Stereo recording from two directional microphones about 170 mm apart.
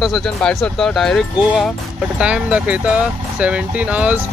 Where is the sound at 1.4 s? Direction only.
10° right (ahead or behind).